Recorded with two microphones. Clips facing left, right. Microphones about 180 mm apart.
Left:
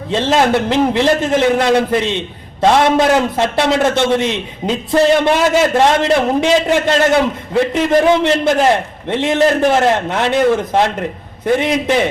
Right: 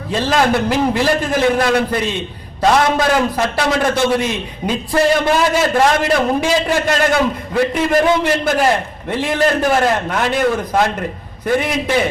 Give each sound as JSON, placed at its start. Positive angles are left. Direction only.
{"t": 0.1, "sound": "a man's voice", "side_deg": 25}